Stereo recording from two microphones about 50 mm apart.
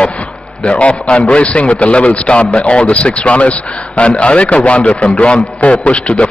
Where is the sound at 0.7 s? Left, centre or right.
Left.